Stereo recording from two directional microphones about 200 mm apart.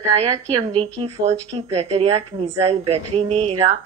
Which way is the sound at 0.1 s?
30° right (ahead or behind).